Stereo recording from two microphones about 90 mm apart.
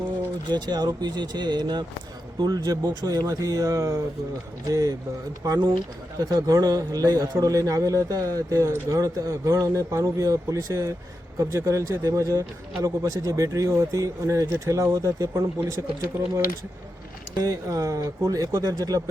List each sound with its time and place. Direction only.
0.4 s speech: 50° right (ahead or behind)
6.1 s speech: 40° right (ahead or behind)
17.4 s speech: 40° right (ahead or behind)